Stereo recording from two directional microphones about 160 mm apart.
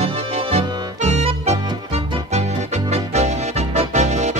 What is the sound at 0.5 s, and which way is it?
Music, 40° right (ahead or behind).